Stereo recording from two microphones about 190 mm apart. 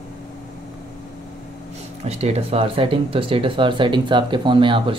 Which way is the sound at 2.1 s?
35° right (ahead or behind).